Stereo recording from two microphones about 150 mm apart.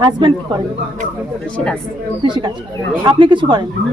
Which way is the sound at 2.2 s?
30° right (ahead or behind).